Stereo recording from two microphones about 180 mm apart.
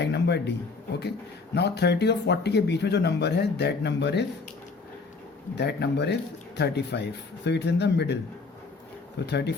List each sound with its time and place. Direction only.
0.0 s a sound: 70° left (ahead or behind)
1.5 s speech: 65° left (ahead or behind)
5.5 s speech: 70° left (ahead or behind)